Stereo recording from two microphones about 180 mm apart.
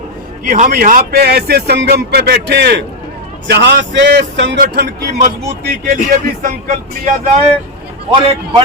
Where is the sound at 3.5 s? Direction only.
70° right (ahead or behind).